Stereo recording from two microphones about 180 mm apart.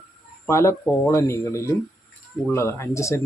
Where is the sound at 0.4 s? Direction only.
15° left (ahead or behind).